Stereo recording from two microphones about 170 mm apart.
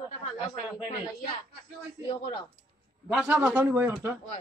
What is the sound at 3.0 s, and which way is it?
A man's voice, 5° right (ahead or behind).